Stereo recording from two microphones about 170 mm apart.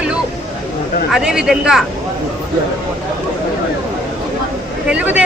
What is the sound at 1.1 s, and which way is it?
Speech, 5° right (ahead or behind).